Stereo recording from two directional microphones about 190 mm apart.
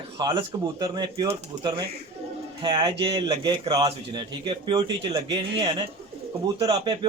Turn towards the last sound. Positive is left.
turn(degrees=-25)  # may be behind; listen again after turning